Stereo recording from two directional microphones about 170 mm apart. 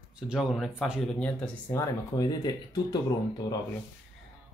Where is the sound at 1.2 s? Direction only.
10° left (ahead or behind).